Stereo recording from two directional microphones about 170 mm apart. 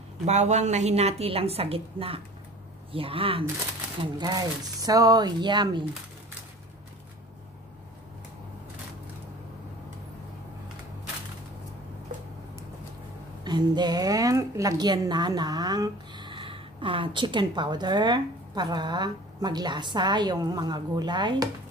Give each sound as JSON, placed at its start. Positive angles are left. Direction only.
{"t": 0.2, "sound": "a woman's voice", "side_deg": -40}
{"t": 13.4, "sound": "a woman's voice", "side_deg": -25}